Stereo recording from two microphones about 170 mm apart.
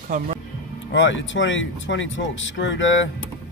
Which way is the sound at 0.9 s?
90° left.